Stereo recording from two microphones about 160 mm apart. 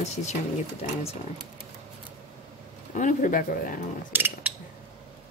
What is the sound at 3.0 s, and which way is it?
Speech, 55° left (ahead or behind).